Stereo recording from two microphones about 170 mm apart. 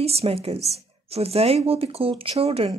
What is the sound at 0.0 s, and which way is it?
Speech, 35° right (ahead or behind).